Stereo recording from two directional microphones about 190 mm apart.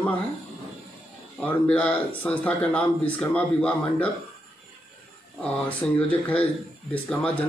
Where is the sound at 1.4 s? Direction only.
5° left (ahead or behind).